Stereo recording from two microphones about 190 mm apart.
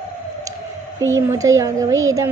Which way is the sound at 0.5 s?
15° right (ahead or behind).